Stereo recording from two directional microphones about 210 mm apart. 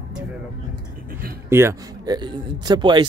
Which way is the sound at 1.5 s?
15° right (ahead or behind).